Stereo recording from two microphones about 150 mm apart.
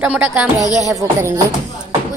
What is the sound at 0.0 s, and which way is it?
Speech, 5° right (ahead or behind).